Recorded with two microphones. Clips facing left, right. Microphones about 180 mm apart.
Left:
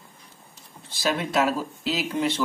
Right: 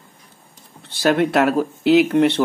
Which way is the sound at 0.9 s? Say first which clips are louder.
Right 9 dB; 60° right (ahead or behind).